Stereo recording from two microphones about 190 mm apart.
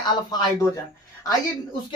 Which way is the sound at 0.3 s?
20° left (ahead or behind).